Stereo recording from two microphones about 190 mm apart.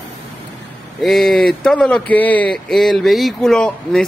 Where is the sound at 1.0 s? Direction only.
Centre (ahead or behind).